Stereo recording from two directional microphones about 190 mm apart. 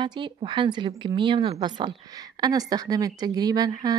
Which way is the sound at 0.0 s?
25° right (ahead or behind).